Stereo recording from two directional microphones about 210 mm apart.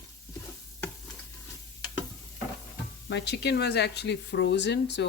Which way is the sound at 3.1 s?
50° left (ahead or behind).